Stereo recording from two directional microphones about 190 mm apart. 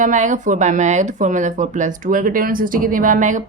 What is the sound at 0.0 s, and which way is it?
A woman's voice, 40° right (ahead or behind).